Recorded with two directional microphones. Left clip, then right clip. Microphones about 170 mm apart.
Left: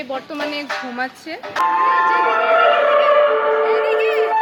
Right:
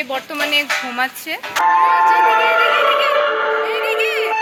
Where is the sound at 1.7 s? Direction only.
20° left (ahead or behind).